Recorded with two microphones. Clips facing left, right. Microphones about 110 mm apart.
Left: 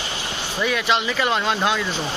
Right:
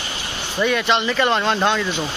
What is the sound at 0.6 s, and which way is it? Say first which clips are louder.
Speech: right 3 dB; centre (ahead or behind).